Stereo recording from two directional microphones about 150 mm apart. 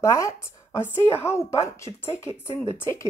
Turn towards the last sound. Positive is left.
turn(degrees=15)  # may be behind; listen again after turning